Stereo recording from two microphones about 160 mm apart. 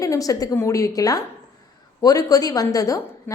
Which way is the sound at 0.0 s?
20° left (ahead or behind).